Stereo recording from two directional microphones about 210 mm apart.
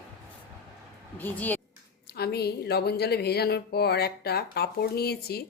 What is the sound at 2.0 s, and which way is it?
Speech, 50° left (ahead or behind).